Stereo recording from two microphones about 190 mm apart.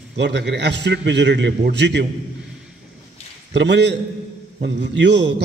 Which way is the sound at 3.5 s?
70° right (ahead or behind).